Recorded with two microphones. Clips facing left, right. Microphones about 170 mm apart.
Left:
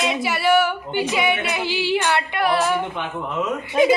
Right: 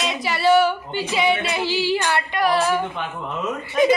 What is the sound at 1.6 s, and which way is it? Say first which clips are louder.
Female singing: even; 20° left (ahead or behind).